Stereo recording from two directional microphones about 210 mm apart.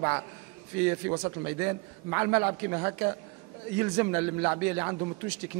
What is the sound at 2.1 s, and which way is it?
A man's voice, 15° right (ahead or behind).